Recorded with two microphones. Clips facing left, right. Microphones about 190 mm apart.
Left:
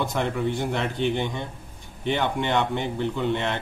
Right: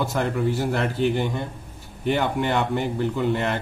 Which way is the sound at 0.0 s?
Centre (ahead or behind).